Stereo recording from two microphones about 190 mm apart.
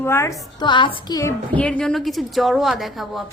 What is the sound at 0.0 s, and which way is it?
Speech, 15° left (ahead or behind).